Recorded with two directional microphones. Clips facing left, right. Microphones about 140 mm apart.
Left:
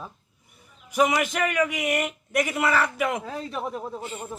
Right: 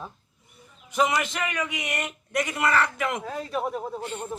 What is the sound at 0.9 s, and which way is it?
Speech, 10° left (ahead or behind).